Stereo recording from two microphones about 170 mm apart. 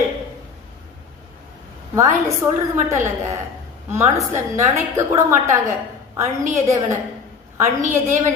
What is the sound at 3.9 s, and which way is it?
A woman's voice, 15° right (ahead or behind).